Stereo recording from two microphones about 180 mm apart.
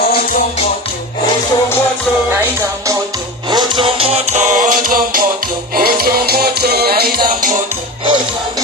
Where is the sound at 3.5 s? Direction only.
25° right (ahead or behind); by 7.2 s 60° right (ahead or behind).